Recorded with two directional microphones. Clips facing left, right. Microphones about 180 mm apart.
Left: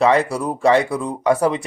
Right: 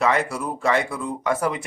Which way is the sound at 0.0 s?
30° left (ahead or behind).